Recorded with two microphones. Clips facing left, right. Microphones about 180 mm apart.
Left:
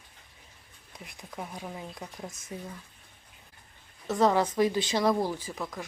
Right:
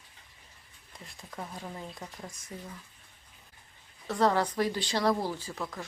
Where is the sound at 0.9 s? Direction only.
15° left (ahead or behind).